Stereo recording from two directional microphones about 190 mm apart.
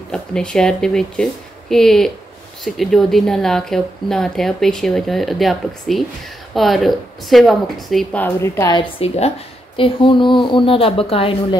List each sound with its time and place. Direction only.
0.1 s speech: 5° left (ahead or behind)
9.0 s speech: 35° left (ahead or behind)